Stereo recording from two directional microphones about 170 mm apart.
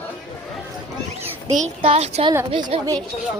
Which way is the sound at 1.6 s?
40° right (ahead or behind).